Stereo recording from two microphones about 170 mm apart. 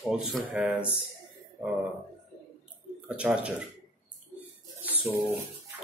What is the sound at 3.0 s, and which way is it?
Speech, 5° right (ahead or behind).